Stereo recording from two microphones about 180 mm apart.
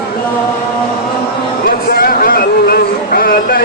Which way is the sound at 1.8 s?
55° left (ahead or behind).